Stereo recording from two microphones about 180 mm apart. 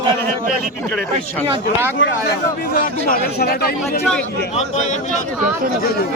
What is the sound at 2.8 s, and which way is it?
Speech, 55° left (ahead or behind).